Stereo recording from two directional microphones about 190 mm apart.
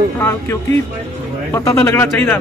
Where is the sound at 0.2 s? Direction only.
15° left (ahead or behind).